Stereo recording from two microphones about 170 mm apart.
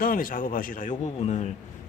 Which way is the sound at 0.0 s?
55° left (ahead or behind).